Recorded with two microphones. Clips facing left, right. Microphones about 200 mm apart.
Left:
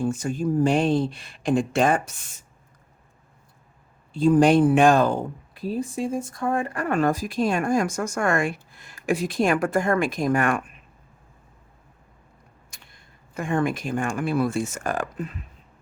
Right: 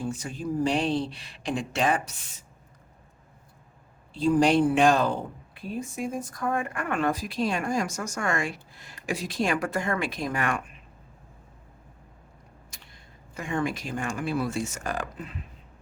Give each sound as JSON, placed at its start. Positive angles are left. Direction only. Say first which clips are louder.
{"t": 0.0, "sound": "speech", "louder": "left 7 dB", "side_deg": 50}
{"t": 4.1, "sound": "speech", "louder": "left 4 dB", "side_deg": 50}
{"t": 13.3, "sound": "speech", "louder": "left 5 dB", "side_deg": 55}